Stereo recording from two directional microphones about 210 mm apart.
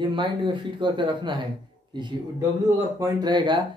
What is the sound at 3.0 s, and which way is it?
Speech, 20° right (ahead or behind).